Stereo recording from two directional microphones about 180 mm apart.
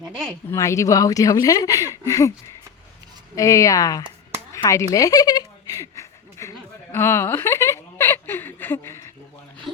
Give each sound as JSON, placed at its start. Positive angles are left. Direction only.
{"t": 0.5, "sound": "speech", "side_deg": 15}
{"t": 3.3, "sound": "speech", "side_deg": 20}
{"t": 4.5, "sound": "a sound", "side_deg": 15}
{"t": 6.9, "sound": "speech", "side_deg": 15}